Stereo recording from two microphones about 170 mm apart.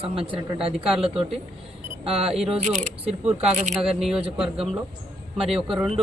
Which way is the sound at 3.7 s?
5° right (ahead or behind).